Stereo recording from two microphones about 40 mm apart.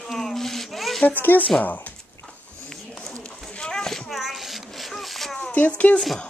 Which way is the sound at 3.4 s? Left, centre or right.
Centre.